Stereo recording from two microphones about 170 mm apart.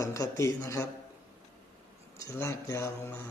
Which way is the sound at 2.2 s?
15° left (ahead or behind).